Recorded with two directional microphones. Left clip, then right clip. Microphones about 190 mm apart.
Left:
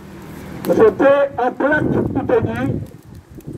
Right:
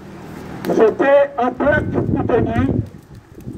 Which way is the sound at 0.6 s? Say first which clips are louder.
Left 2 dB; 35° right (ahead or behind).